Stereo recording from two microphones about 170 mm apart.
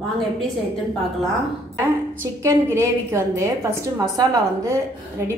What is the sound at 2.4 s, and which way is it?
A woman's voice, 15° right (ahead or behind).